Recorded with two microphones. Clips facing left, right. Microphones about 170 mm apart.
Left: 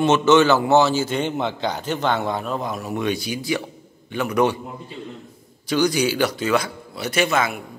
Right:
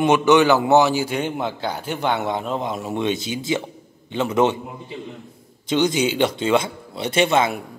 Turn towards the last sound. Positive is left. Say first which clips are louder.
# right 3 dB
turn(degrees=-25)  # may be behind; listen again after turning